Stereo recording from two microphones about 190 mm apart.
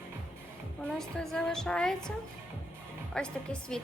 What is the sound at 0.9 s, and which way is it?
A woman's voice, centre (ahead or behind).